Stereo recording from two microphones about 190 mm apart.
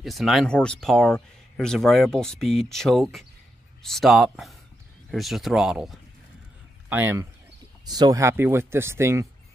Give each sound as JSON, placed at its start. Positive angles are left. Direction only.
{"t": 0.0, "sound": "speech", "side_deg": 0}
{"t": 7.8, "sound": "speech", "side_deg": -20}